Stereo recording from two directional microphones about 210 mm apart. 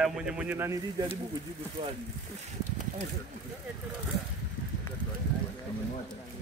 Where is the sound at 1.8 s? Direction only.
25° right (ahead or behind).